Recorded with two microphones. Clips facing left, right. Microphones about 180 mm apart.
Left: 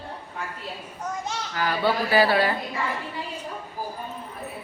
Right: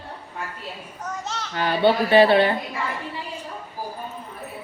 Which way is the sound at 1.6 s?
25° right (ahead or behind).